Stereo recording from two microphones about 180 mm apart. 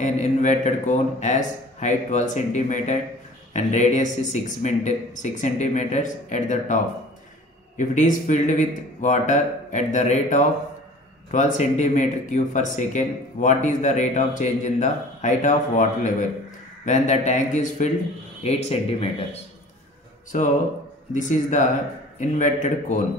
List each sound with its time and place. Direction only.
0.0 s speech: 40° left (ahead or behind)
20.3 s speech: 45° left (ahead or behind)